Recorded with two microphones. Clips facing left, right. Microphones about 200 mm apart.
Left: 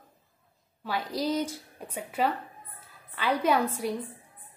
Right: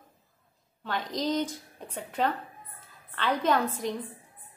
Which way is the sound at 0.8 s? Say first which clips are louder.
Left 1 dB; 10° left (ahead or behind).